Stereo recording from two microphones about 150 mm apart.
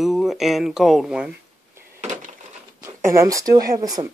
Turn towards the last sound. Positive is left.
turn(degrees=-25)  # may be behind; listen again after turning